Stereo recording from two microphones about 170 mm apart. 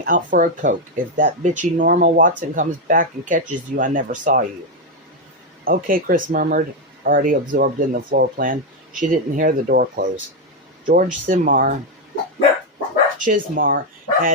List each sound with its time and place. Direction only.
0.0 s speech: 50° right (ahead or behind)
5.6 s speech: 55° right (ahead or behind)
13.1 s speech: 50° right (ahead or behind)